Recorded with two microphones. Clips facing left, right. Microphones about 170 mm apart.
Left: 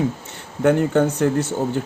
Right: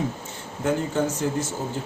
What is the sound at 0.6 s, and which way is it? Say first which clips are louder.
Speech: left 7 dB; 60° left (ahead or behind).